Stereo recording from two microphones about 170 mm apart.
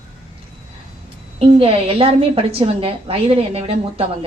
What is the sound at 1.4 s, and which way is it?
A woman's voice, 35° right (ahead or behind).